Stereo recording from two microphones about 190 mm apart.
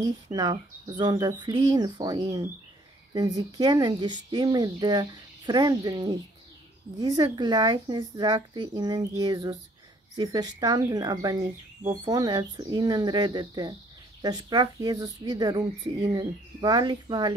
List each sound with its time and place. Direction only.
0.0 s speech: 20° right (ahead or behind)